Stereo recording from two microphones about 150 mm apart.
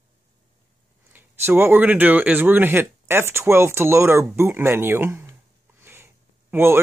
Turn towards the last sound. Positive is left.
turn(degrees=-15)  # may be behind; listen again after turning